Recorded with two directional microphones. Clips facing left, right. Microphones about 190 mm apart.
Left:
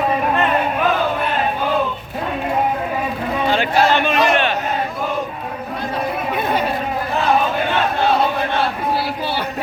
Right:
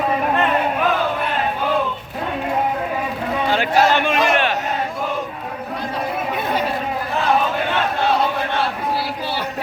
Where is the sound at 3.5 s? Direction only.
10° right (ahead or behind).